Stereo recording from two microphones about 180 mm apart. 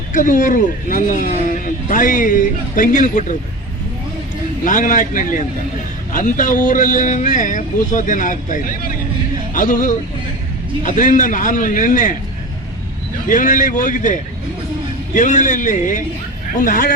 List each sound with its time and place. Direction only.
0.1 s a man's voice: 45° left (ahead or behind)
4.6 s a man's voice: 45° left (ahead or behind)
13.2 s a man's voice: 45° left (ahead or behind)